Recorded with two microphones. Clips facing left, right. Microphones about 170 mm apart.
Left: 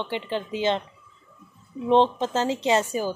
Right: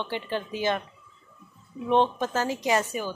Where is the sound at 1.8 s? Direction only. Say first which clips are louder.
Left 3 dB; 25° left (ahead or behind).